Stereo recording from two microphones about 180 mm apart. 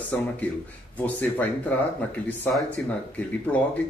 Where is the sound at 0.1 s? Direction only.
10° left (ahead or behind).